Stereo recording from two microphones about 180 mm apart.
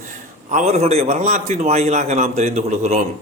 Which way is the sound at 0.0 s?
45° right (ahead or behind).